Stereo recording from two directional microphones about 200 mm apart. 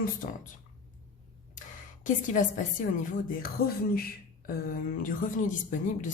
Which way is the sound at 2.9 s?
45° left (ahead or behind).